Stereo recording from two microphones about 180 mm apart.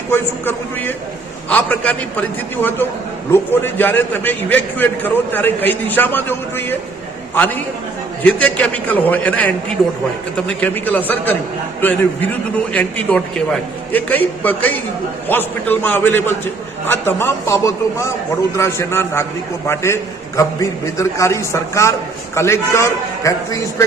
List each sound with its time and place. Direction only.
0.1 s a man's voice: 10° left (ahead or behind)